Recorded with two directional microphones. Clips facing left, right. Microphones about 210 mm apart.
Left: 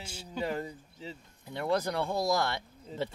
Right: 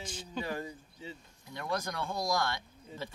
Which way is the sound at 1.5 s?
25° left (ahead or behind).